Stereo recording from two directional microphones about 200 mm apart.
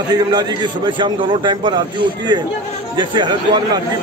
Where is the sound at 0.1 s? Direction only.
20° right (ahead or behind).